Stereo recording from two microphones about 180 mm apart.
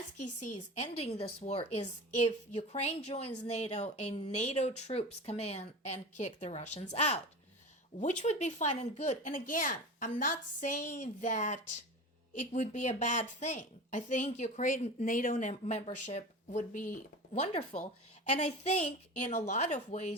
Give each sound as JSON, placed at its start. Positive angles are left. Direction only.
{"t": 0.2, "sound": "a woman's voice", "side_deg": 40}